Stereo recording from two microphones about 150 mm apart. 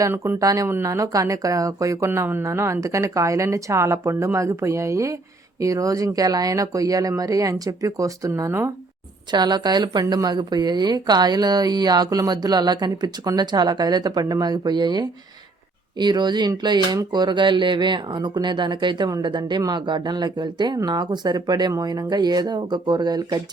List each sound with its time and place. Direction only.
0.0 s speech: 15° right (ahead or behind)